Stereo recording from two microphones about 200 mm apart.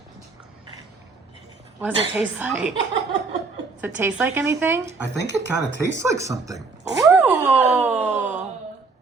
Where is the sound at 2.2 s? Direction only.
5° right (ahead or behind).